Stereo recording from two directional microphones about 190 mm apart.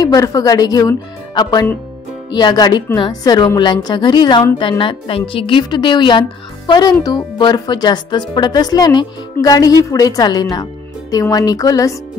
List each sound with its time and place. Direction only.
0.0 s speech: 20° left (ahead or behind)